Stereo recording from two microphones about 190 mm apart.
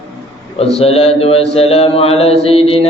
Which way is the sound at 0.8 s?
30° left (ahead or behind).